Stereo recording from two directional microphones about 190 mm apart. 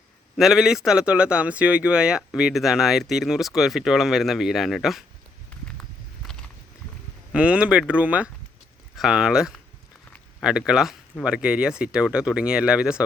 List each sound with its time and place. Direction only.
0.3 s speech: centre (ahead or behind)
6.2 s a sound: centre (ahead or behind)
7.3 s speech: 5° right (ahead or behind)